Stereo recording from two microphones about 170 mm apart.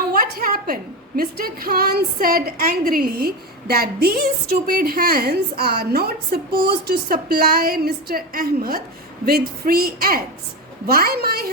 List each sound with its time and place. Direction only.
0.1 s a woman's voice: 60° right (ahead or behind)